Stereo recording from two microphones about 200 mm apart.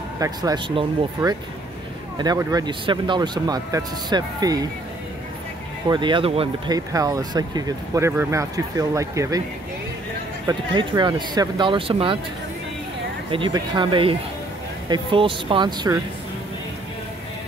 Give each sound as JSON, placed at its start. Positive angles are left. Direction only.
{"t": 0.2, "sound": "speech", "side_deg": -20}
{"t": 5.9, "sound": "speech", "side_deg": -25}
{"t": 6.9, "sound": "speech", "side_deg": -15}
{"t": 10.4, "sound": "speech", "side_deg": -25}
{"t": 13.3, "sound": "speech", "side_deg": -25}